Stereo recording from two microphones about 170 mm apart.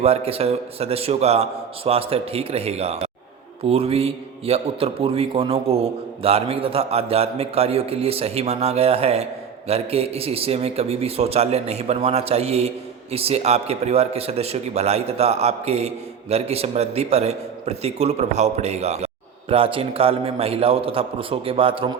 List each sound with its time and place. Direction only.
0.0 s a man's voice: 35° right (ahead or behind)